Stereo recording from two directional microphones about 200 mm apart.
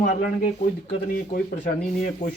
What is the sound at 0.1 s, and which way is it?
Speech, 35° left (ahead or behind).